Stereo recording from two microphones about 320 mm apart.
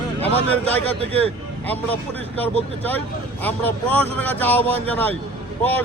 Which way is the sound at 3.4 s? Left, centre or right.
Centre.